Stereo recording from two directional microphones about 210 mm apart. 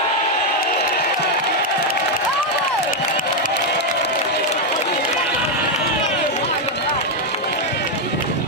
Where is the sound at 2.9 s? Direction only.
40° left (ahead or behind).